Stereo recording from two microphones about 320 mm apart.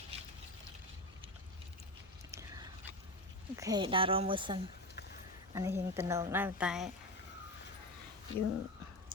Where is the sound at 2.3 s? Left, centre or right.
Centre.